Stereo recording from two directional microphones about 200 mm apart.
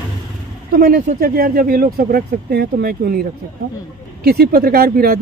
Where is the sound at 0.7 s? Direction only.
45° right (ahead or behind).